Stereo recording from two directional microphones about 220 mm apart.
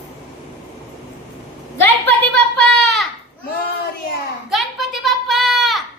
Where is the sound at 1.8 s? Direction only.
5° left (ahead or behind).